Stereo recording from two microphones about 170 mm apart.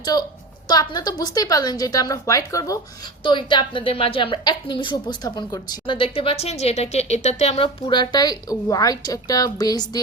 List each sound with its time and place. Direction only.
0.0 s a woman's voice: 25° left (ahead or behind)